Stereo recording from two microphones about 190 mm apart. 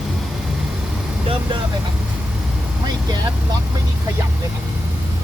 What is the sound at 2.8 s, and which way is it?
Vehicle, 20° right (ahead or behind).